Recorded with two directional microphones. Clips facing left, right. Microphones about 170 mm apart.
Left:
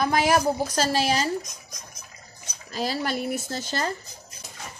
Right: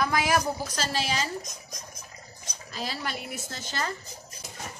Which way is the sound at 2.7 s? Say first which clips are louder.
Left 7 dB; 35° left (ahead or behind).